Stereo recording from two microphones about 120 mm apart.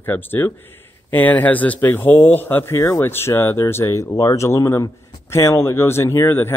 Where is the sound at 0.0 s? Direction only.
15° left (ahead or behind).